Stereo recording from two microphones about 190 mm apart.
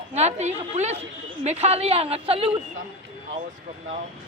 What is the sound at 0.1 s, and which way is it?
A woman's voice, 35° right (ahead or behind).